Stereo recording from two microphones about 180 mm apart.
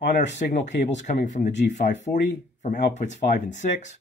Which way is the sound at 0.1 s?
45° left (ahead or behind).